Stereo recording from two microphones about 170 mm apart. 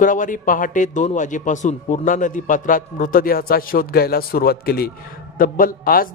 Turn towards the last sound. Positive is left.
turn(degrees=55)  # may be behind; listen again after turning